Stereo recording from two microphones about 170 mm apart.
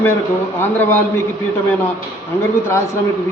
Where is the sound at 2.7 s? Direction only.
15° left (ahead or behind).